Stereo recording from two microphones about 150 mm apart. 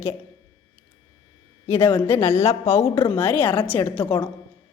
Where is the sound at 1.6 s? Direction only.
15° left (ahead or behind).